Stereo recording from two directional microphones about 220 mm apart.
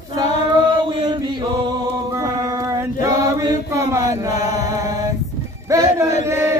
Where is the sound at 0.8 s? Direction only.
20° right (ahead or behind).